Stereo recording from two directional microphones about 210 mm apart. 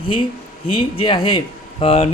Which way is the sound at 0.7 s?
25° left (ahead or behind).